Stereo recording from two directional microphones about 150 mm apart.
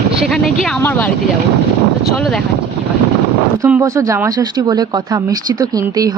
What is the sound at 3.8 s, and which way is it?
Speech, 20° right (ahead or behind).